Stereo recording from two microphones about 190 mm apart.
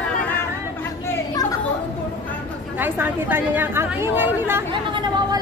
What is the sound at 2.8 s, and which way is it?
A woman's voice, 10° right (ahead or behind).